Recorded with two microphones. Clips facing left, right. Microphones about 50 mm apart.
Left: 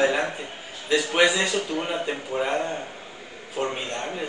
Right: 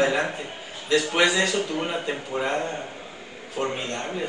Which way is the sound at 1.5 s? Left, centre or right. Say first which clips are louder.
Even; centre.